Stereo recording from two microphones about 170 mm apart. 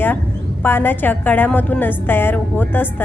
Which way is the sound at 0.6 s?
10° left (ahead or behind).